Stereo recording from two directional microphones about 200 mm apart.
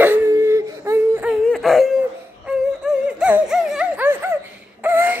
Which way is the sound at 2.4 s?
5° right (ahead or behind).